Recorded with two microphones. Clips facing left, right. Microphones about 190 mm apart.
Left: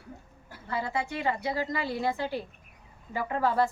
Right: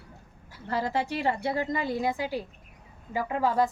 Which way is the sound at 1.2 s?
30° right (ahead or behind).